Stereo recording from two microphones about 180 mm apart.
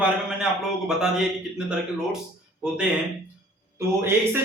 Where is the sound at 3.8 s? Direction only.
15° right (ahead or behind).